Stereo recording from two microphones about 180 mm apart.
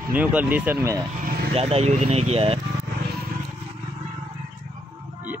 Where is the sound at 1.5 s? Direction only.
35° right (ahead or behind).